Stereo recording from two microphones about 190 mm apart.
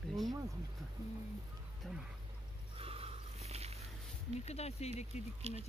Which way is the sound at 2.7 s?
30° right (ahead or behind).